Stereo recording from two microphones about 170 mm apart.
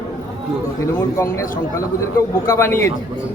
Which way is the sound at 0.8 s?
15° left (ahead or behind).